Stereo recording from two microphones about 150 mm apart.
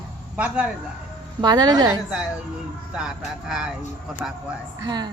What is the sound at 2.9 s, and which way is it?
Speech, 5° right (ahead or behind).